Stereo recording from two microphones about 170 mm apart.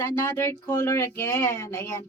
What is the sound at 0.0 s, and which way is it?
Speech, 20° left (ahead or behind).